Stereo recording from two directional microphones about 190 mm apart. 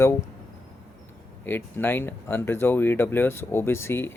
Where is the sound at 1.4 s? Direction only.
10° left (ahead or behind).